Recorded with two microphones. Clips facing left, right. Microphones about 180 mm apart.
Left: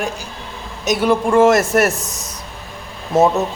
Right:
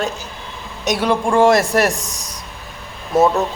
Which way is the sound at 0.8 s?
Centre (ahead or behind).